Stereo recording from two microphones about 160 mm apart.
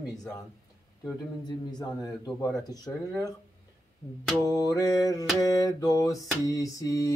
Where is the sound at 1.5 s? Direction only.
25° left (ahead or behind).